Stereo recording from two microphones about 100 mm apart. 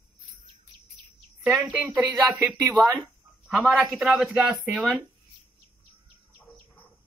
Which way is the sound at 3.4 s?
5° right (ahead or behind).